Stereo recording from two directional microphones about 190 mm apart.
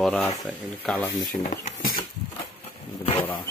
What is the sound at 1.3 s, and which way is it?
Speech, 45° left (ahead or behind).